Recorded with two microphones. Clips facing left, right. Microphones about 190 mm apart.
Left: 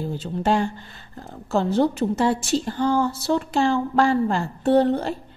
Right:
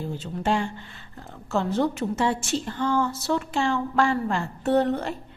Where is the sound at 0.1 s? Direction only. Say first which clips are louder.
Left 4 dB; 40° left (ahead or behind).